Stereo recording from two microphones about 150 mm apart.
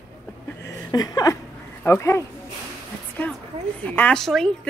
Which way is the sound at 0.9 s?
25° left (ahead or behind).